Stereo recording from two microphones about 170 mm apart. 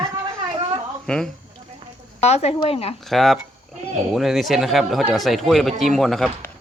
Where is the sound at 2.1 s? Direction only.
40° left (ahead or behind).